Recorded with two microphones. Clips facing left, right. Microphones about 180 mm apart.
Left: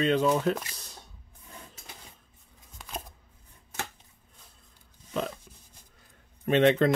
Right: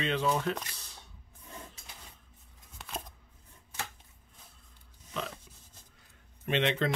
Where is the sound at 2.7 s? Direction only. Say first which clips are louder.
Left 2 dB; centre (ahead or behind).